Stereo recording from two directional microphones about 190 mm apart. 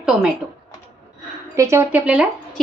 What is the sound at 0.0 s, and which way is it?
Speech, 5° right (ahead or behind).